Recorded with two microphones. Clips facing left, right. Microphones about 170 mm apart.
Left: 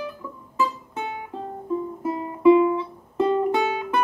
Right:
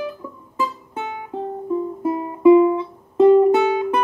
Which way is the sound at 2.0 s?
20° right (ahead or behind).